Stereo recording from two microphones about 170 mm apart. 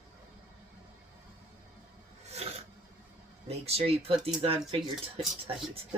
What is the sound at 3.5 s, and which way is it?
Speech, 35° right (ahead or behind).